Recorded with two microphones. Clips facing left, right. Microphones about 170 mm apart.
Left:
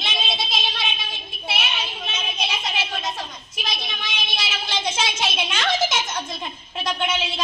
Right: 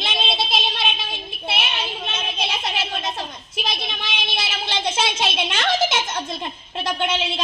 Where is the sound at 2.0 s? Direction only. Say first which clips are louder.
Right 2 dB; 55° right (ahead or behind).